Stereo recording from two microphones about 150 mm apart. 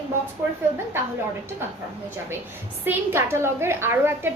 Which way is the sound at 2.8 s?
15° right (ahead or behind).